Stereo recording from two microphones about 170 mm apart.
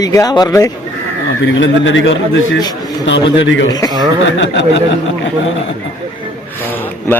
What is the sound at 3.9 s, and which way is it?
Speech, 25° right (ahead or behind).